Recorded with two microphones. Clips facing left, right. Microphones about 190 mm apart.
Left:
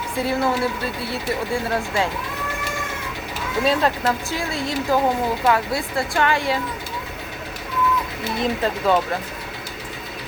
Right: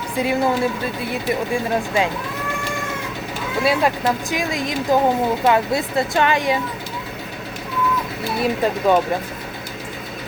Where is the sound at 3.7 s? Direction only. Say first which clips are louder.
Right 1 dB; 15° right (ahead or behind).